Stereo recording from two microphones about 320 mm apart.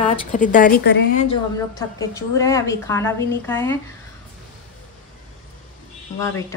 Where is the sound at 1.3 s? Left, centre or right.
Centre.